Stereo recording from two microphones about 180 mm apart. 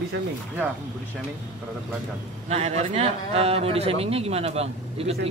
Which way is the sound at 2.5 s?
35° right (ahead or behind).